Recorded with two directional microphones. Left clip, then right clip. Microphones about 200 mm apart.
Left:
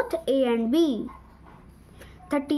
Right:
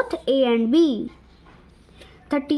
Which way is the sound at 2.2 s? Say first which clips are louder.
Right 3 dB; 25° right (ahead or behind).